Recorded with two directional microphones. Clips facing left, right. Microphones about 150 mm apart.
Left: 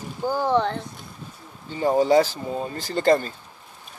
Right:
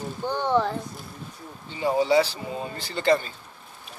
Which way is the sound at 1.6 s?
45° left (ahead or behind).